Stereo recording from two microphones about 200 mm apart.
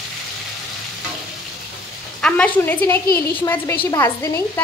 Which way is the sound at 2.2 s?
5° left (ahead or behind).